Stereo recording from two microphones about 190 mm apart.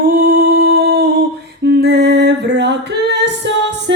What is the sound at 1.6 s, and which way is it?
Female singing, 60° right (ahead or behind).